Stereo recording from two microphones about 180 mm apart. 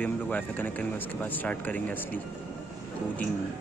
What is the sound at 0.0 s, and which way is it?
Speech, 10° left (ahead or behind).